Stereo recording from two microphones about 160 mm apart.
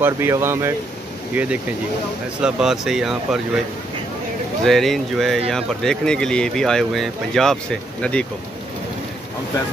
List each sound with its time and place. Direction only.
0.0 s speech: 15° right (ahead or behind)
4.6 s speech: centre (ahead or behind)